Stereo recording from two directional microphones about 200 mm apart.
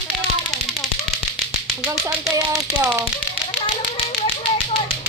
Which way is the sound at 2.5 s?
10° right (ahead or behind).